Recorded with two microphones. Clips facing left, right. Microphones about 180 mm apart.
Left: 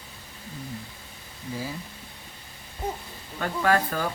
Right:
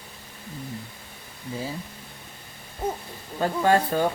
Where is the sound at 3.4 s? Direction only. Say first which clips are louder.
Right 3 dB; 30° right (ahead or behind).